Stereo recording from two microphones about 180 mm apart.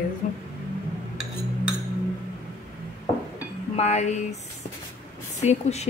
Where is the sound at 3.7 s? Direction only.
40° left (ahead or behind).